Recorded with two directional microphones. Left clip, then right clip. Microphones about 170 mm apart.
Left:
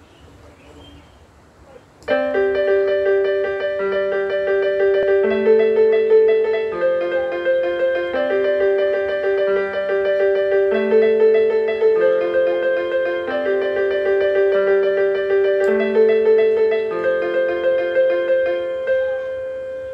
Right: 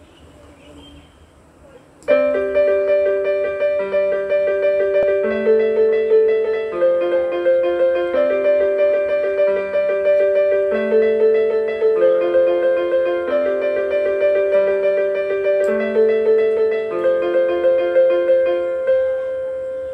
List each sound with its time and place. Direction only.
2.0 s music: 35° left (ahead or behind)